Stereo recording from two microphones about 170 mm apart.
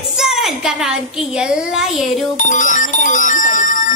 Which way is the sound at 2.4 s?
50° left (ahead or behind).